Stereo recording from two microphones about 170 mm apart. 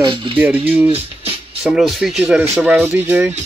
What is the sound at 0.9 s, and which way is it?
Music, 35° right (ahead or behind).